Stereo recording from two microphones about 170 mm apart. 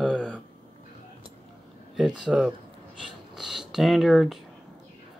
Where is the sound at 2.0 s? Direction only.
Centre (ahead or behind).